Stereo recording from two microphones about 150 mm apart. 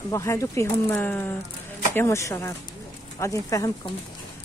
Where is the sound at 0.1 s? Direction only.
20° left (ahead or behind).